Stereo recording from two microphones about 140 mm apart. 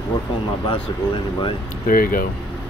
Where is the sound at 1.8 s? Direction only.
80° left.